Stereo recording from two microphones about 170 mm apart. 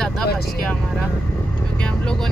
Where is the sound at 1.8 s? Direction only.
5° left (ahead or behind).